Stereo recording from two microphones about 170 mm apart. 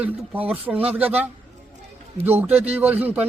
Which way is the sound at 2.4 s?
10° right (ahead or behind).